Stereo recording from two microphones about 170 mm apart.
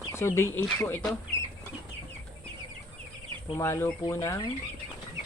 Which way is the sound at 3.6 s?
15° left (ahead or behind).